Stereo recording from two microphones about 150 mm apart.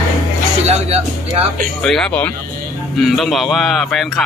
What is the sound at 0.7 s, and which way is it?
Speech, 45° right (ahead or behind).